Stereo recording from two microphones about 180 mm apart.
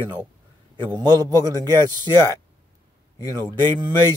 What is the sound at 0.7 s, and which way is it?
A man's voice, 20° right (ahead or behind).